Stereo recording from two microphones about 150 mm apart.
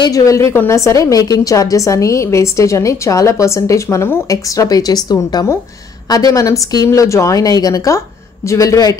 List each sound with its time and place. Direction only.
0.0 s a woman's voice: 20° left (ahead or behind)